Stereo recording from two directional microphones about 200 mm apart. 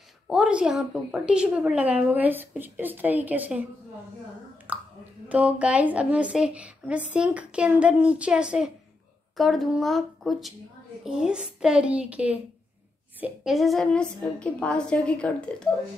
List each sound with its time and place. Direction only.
0.3 s a woman's voice: 5° right (ahead or behind)
4.7 s a sound: 10° right (ahead or behind)
5.3 s a woman's voice: 5° right (ahead or behind)